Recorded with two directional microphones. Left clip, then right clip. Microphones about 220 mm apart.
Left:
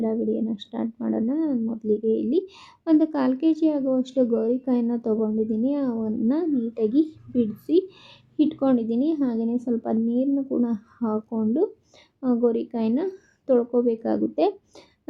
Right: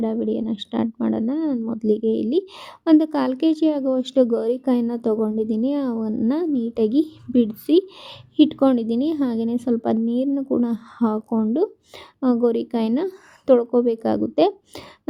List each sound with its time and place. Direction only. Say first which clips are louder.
0.0 s a woman's voice: right 2 dB; 40° right (ahead or behind)